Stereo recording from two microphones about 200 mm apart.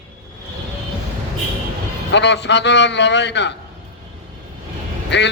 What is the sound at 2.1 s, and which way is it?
A man's voice, 60° left (ahead or behind).